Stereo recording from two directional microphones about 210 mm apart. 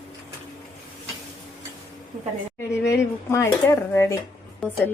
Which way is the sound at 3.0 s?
15° left (ahead or behind).